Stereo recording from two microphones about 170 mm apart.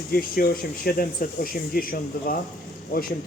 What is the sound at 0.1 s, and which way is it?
Speech, 60° left (ahead or behind).